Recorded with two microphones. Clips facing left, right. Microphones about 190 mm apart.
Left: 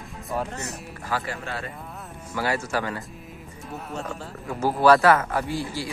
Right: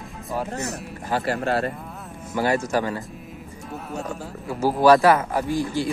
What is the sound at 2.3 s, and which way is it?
Speech, 20° right (ahead or behind).